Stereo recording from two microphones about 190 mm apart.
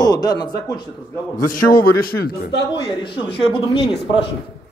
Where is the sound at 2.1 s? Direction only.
55° left (ahead or behind).